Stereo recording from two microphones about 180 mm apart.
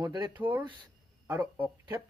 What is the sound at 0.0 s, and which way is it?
Speech, 25° right (ahead or behind).